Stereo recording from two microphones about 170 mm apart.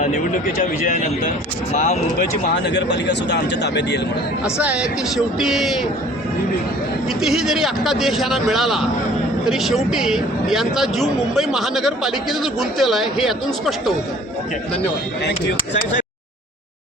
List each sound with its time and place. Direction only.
0.9 s speech: 50° left (ahead or behind)
2.6 s speech: 90° left
4.4 s a man's voice: 5° right (ahead or behind)
7.2 s a man's voice: centre (ahead or behind)